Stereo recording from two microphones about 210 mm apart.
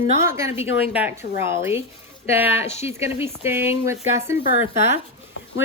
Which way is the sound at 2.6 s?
30° left (ahead or behind).